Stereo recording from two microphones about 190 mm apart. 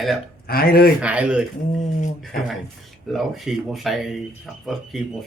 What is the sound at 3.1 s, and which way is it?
Speech, centre (ahead or behind).